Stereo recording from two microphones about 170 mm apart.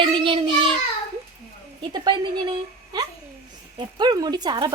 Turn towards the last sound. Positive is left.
turn(degrees=-25)  # may be behind; listen again after turning